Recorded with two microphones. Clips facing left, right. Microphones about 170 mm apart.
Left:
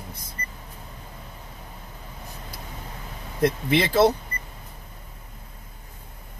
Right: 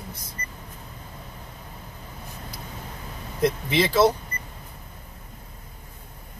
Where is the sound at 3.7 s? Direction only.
55° left (ahead or behind).